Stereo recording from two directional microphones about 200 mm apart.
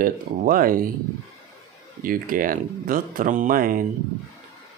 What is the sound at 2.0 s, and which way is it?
Speech, 45° right (ahead or behind).